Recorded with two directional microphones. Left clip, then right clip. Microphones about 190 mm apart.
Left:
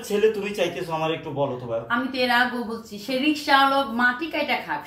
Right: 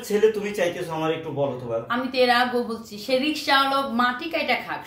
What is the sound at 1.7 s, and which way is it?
A woman's voice, 15° right (ahead or behind).